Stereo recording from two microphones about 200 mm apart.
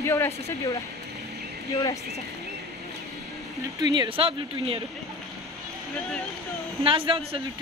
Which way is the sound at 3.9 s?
25° right (ahead or behind).